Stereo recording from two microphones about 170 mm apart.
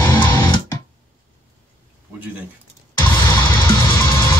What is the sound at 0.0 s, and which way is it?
Music, 10° left (ahead or behind).